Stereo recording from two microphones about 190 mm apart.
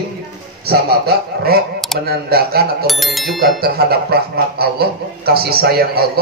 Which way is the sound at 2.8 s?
Centre (ahead or behind).